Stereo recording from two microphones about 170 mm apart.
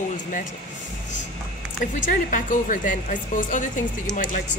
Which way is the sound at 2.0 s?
50° left (ahead or behind).